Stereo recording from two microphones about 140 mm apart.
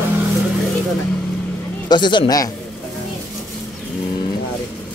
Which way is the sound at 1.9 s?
35° left (ahead or behind).